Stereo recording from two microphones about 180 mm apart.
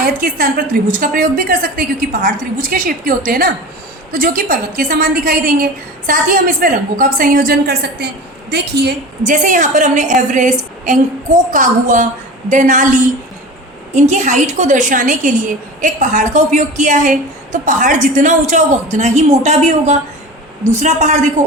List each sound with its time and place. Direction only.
0.0 s a woman's voice: 50° right (ahead or behind)
9.2 s a woman's voice: 45° right (ahead or behind)
13.9 s a woman's voice: 40° right (ahead or behind)